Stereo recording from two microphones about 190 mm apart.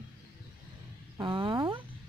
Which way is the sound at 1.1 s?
25° right (ahead or behind).